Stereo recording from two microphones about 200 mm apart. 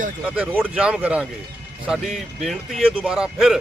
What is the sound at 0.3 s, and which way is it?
A man's voice, 5° right (ahead or behind).